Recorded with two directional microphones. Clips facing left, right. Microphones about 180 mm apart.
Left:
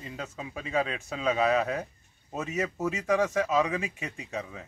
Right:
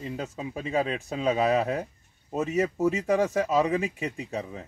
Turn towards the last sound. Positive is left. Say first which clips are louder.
# right 3 dB
turn(degrees=-35)  # may be behind; listen again after turning